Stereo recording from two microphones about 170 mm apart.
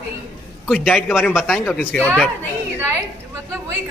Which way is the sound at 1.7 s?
10° left (ahead or behind).